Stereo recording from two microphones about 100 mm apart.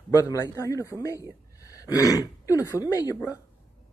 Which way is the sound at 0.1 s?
35° left (ahead or behind).